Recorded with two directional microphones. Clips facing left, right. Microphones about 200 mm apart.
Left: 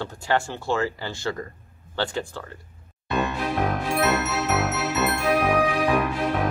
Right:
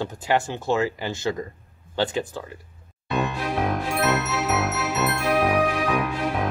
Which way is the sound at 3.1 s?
Centre (ahead or behind).